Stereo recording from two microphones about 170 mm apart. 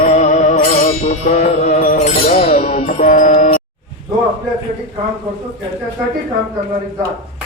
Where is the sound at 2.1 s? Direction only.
35° left (ahead or behind).